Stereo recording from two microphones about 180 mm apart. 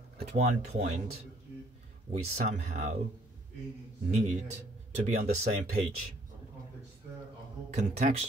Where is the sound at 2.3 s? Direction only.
45° right (ahead or behind).